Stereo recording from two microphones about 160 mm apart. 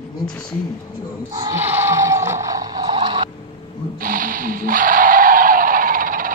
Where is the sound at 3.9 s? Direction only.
60° right (ahead or behind).